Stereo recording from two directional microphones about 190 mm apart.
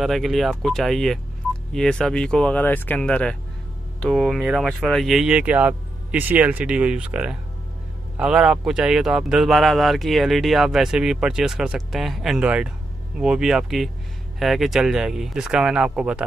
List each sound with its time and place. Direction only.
0.0 s speech: centre (ahead or behind)